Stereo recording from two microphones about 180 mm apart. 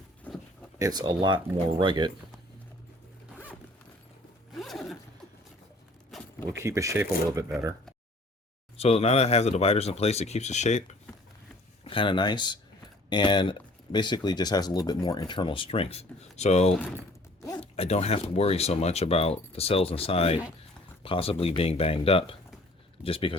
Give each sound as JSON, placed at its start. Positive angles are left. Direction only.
{"t": 0.8, "sound": "speech", "side_deg": -20}
{"t": 4.5, "sound": "zipper", "side_deg": 0}
{"t": 6.1, "sound": "keys jangling", "side_deg": 0}
{"t": 6.5, "sound": "speech", "side_deg": -15}
{"t": 8.8, "sound": "speech", "side_deg": 35}
{"t": 11.9, "sound": "speech", "side_deg": 30}